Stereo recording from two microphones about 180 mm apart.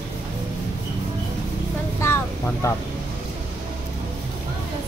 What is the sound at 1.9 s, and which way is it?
Vehicle, 15° left (ahead or behind).